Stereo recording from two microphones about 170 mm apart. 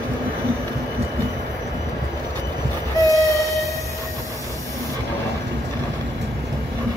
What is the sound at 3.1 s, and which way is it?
Train, 20° right (ahead or behind).